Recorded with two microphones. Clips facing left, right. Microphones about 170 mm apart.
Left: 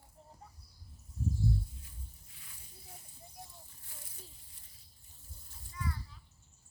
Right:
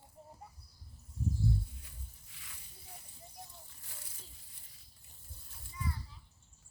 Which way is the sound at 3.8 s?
85° right.